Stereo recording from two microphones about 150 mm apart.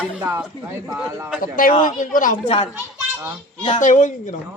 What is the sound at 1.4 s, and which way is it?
A man's voice, 65° left (ahead or behind).